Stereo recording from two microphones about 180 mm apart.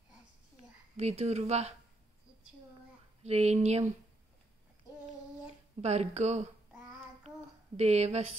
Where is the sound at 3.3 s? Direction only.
35° right (ahead or behind).